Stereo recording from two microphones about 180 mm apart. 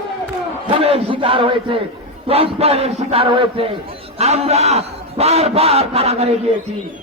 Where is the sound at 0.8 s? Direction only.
30° right (ahead or behind).